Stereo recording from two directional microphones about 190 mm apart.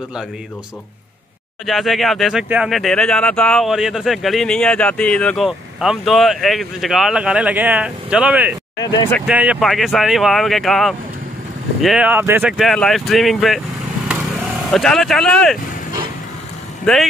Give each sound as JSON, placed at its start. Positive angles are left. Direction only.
{"t": 1.7, "sound": "speech", "side_deg": 0}
{"t": 8.7, "sound": "speech", "side_deg": 20}
{"t": 9.2, "sound": "speech", "side_deg": -5}
{"t": 14.7, "sound": "speech", "side_deg": 0}
{"t": 16.9, "sound": "speech", "side_deg": 5}